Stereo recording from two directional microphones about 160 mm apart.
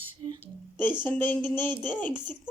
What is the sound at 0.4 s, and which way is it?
Speech, 10° left (ahead or behind).